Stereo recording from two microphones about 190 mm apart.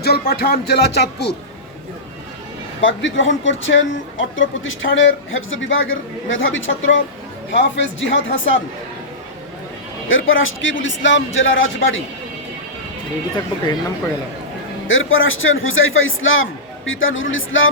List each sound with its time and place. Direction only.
0.0 s speech: 55° left (ahead or behind)
2.8 s speech: 80° left
10.1 s a man's voice: 90° left
14.8 s a man's voice: 90° left